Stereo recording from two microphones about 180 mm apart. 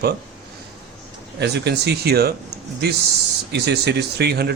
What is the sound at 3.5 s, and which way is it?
Speech, 65° right (ahead or behind).